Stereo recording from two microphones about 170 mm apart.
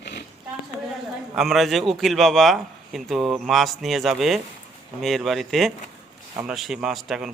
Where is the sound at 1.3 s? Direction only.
Centre (ahead or behind).